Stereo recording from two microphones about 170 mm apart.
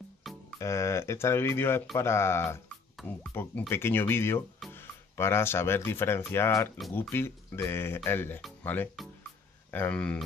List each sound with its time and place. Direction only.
0.2 s music: centre (ahead or behind)
0.6 s speech: 15° left (ahead or behind)